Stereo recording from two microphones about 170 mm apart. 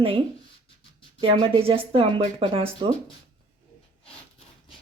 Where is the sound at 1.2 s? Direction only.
35° right (ahead or behind).